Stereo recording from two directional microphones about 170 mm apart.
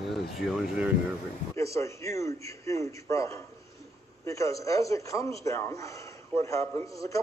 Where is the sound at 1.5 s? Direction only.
15° left (ahead or behind).